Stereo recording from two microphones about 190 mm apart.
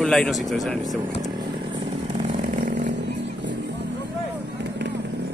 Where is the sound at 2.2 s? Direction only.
40° right (ahead or behind).